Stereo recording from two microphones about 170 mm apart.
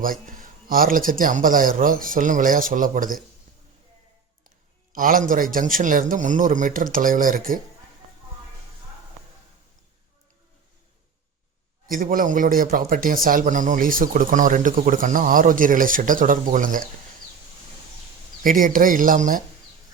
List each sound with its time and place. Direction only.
0.0 s a man's voice: 55° right (ahead or behind)
4.9 s a man's voice: 55° right (ahead or behind)
11.9 s a man's voice: 55° right (ahead or behind)
18.4 s a man's voice: 55° right (ahead or behind)